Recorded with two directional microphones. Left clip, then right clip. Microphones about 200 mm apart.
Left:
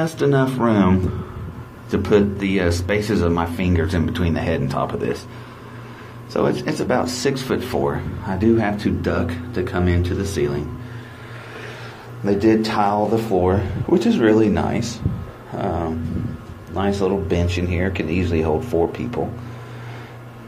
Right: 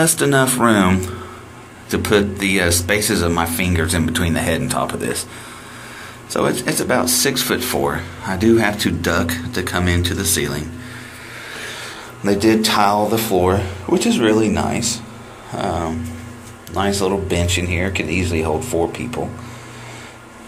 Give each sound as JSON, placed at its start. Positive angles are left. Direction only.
{"t": 0.0, "sound": "speech", "side_deg": -5}
{"t": 6.3, "sound": "speech", "side_deg": 0}
{"t": 12.3, "sound": "speech", "side_deg": 0}